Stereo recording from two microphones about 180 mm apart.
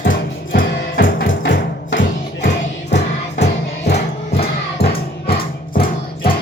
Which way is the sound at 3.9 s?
65° left (ahead or behind).